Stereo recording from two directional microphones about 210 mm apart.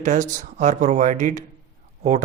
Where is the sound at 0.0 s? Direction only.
35° right (ahead or behind).